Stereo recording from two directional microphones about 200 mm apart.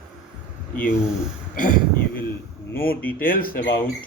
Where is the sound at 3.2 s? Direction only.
45° left (ahead or behind).